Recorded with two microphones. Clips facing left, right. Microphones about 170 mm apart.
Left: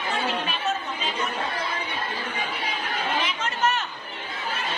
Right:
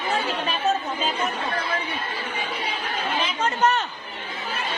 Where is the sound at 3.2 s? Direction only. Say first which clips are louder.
Right 4 dB; 35° right (ahead or behind).